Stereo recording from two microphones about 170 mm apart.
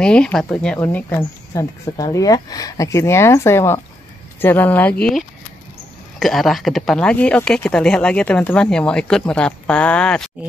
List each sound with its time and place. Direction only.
0.0 s speech: 5° left (ahead or behind)
1.5 s speech: 20° left (ahead or behind); by 10.3 s 5° left (ahead or behind)